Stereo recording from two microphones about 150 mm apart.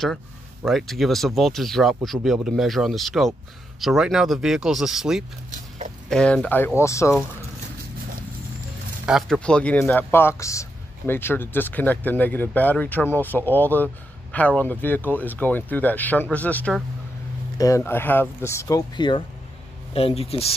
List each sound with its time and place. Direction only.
0.6 s speech: centre (ahead or behind)
6.8 s speech: 20° left (ahead or behind)
9.0 s speech: 5° right (ahead or behind)
9.4 s a man's voice: 10° left (ahead or behind); by 20.5 s 40° left (ahead or behind)